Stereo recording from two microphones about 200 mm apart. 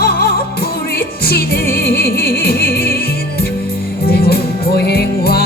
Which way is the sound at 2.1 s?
50° left (ahead or behind).